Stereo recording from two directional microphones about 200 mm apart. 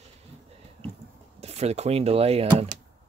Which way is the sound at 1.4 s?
30° right (ahead or behind).